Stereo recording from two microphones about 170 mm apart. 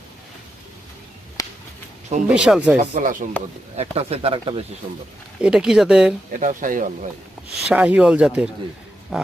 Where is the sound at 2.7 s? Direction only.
50° right (ahead or behind).